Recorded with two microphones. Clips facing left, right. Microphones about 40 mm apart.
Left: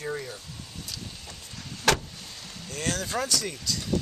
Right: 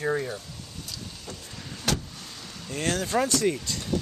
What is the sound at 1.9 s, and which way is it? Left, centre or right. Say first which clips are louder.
Vehicle: left 5 dB; left.